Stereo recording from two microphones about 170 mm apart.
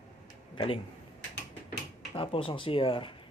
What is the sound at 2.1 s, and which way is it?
Speech, 30° left (ahead or behind).